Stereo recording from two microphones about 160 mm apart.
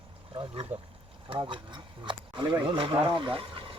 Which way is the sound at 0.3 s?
25° right (ahead or behind).